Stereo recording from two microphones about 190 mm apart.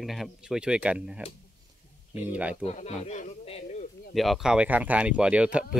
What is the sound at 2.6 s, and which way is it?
Speech, 35° left (ahead or behind).